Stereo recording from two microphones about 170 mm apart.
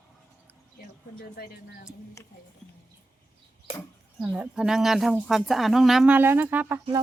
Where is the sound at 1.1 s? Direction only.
65° left (ahead or behind).